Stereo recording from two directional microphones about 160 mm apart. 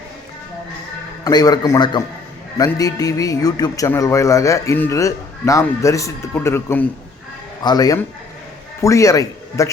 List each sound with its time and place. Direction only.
1.2 s a man's voice: 25° left (ahead or behind)